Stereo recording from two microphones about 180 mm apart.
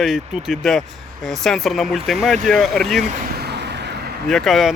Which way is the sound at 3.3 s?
65° right (ahead or behind).